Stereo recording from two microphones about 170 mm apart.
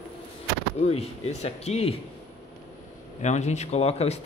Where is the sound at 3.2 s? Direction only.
45° left (ahead or behind).